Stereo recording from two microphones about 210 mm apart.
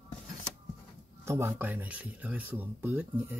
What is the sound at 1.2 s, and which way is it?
Speech, 10° right (ahead or behind).